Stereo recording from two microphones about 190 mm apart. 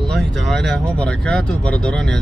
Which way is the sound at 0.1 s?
Centre (ahead or behind).